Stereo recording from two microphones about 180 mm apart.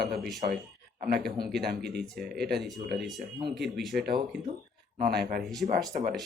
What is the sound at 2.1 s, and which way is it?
Speech, centre (ahead or behind).